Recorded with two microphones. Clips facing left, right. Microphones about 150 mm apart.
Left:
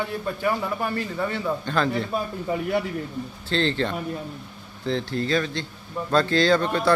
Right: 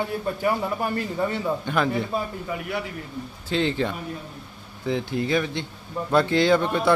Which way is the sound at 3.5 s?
10° right (ahead or behind).